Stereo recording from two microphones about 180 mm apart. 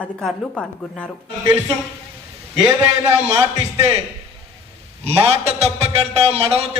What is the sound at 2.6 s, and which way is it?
A man's voice, 15° right (ahead or behind).